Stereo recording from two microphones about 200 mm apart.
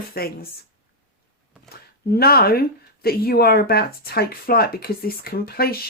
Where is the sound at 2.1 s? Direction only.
50° left (ahead or behind).